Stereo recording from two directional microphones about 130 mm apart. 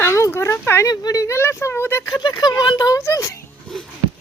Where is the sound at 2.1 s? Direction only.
30° left (ahead or behind).